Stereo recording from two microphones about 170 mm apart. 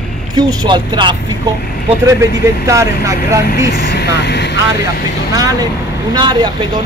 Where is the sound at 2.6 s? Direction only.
20° right (ahead or behind).